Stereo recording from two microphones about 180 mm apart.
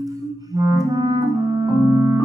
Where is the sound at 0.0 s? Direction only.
20° right (ahead or behind).